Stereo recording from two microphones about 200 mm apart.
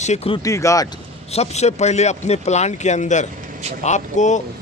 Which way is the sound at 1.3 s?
30° left (ahead or behind).